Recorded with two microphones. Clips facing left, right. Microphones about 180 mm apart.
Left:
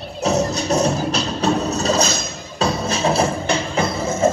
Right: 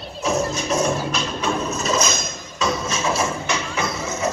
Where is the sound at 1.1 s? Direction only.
35° left (ahead or behind).